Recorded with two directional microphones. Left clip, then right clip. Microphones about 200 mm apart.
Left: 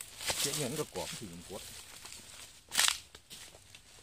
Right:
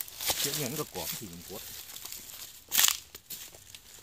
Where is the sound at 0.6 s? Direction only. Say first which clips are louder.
Right 1 dB; 35° right (ahead or behind).